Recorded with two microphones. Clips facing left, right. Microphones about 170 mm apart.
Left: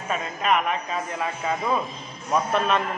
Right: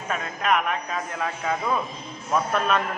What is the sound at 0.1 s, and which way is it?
A man's voice, centre (ahead or behind).